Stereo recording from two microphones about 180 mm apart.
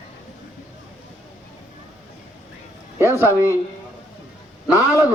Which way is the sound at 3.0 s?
15° right (ahead or behind).